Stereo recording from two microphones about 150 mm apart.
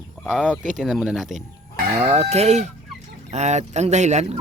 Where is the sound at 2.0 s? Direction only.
45° right (ahead or behind).